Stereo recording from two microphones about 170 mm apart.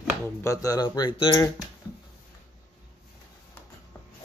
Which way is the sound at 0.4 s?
20° left (ahead or behind).